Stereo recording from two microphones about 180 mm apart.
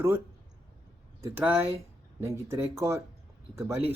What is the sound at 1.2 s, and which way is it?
Speech, 10° right (ahead or behind).